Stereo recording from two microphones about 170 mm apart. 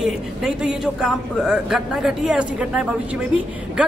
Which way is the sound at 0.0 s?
5° right (ahead or behind).